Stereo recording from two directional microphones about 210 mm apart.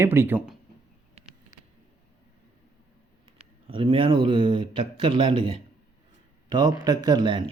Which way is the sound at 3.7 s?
25° right (ahead or behind).